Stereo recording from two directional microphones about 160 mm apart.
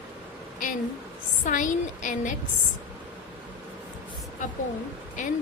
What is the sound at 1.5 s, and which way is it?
Speech, 55° left (ahead or behind).